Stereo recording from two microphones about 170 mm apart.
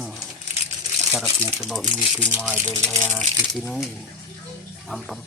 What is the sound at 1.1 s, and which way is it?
Speech, 5° right (ahead or behind).